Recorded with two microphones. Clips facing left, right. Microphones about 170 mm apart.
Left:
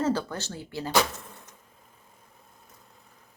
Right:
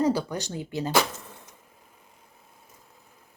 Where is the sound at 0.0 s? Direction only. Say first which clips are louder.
Right 3 dB; 15° right (ahead or behind).